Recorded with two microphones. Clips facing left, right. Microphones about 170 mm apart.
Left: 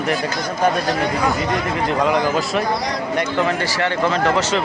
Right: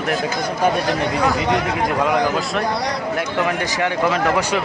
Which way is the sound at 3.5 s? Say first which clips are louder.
Even; 15° right (ahead or behind).